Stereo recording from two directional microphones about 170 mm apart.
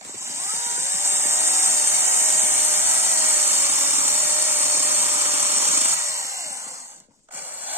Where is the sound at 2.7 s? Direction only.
15° right (ahead or behind).